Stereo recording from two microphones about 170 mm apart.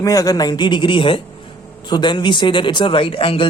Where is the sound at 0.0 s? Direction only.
20° left (ahead or behind).